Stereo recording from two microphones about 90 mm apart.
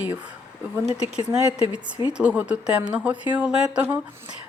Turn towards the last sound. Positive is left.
turn(degrees=-10)  # may be behind; listen again after turning